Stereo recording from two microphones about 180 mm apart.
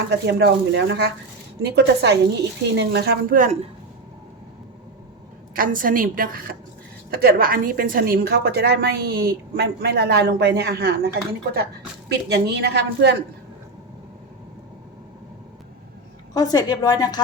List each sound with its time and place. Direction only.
0.1 s a woman's voice: 70° right (ahead or behind); by 3.6 s 45° right (ahead or behind)
5.5 s a woman's voice: 50° right (ahead or behind); by 13.1 s 70° right (ahead or behind)
16.3 s a woman's voice: 20° left (ahead or behind)